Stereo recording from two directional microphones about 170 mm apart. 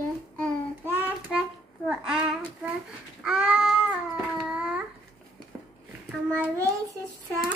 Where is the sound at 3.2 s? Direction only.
5° right (ahead or behind).